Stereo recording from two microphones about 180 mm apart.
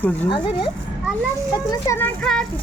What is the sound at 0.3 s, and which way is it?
Speech, 25° left (ahead or behind).